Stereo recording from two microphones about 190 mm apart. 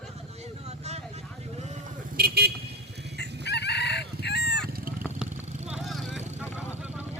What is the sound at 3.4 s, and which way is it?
Chicken, 65° left (ahead or behind).